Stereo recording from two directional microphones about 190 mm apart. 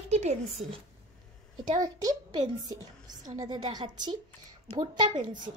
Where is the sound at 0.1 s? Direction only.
35° right (ahead or behind).